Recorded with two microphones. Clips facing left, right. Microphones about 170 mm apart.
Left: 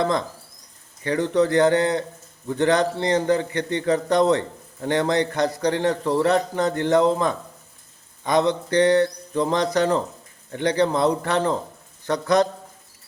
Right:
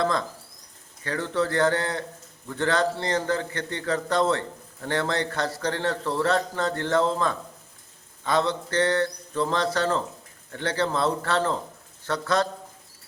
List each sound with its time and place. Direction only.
0.0 s a man's voice: 20° left (ahead or behind)